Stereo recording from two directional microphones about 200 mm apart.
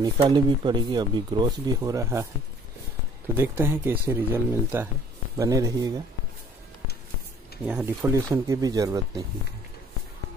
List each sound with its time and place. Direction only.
0.0 s speech: 20° right (ahead or behind)
3.3 s speech: 10° right (ahead or behind)
7.6 s speech: 5° right (ahead or behind)
8.0 s speech: 15° right (ahead or behind)